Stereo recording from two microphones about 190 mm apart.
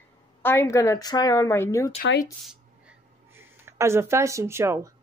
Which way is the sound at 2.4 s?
10° right (ahead or behind).